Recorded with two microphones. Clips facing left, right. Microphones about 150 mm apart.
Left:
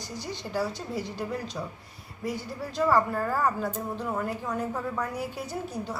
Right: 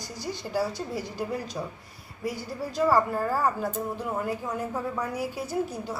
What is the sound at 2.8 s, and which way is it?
Speech, 10° right (ahead or behind).